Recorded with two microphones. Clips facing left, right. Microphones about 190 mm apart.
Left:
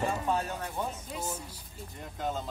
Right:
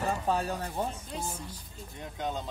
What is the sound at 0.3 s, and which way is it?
Speech, 35° right (ahead or behind).